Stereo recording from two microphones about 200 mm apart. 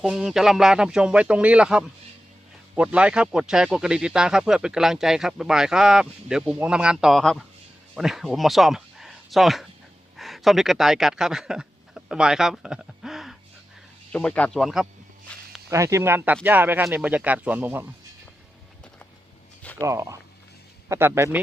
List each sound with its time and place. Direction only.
0.0 s speech: centre (ahead or behind)
15.7 s speech: 15° right (ahead or behind)
19.8 s speech: 15° right (ahead or behind)